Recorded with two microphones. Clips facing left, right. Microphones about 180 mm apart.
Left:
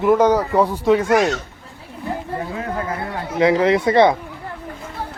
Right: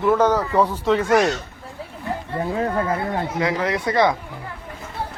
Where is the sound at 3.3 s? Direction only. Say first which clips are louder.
Left 10 dB; 25° left (ahead or behind).